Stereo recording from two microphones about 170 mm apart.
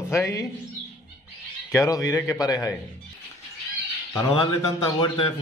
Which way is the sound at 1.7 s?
20° left (ahead or behind).